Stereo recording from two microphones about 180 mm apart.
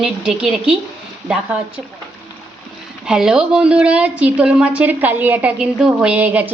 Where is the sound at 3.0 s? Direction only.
5° right (ahead or behind).